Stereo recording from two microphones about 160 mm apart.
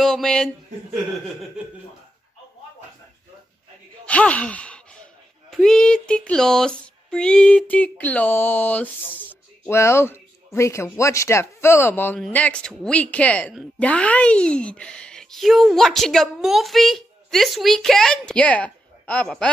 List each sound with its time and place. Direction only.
0.0 s speech: 5° left (ahead or behind)
4.0 s gasp: 10° left (ahead or behind)
5.5 s a sound: centre (ahead or behind)
12.2 s speech: 10° left (ahead or behind)